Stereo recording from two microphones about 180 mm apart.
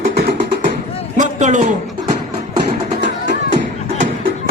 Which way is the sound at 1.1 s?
40° right (ahead or behind).